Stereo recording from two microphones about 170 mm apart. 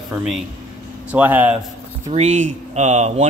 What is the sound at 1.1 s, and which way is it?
Speech, 10° right (ahead or behind).